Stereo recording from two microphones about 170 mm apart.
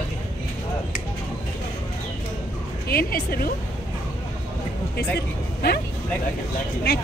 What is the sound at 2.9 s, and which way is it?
Music, 65° left (ahead or behind).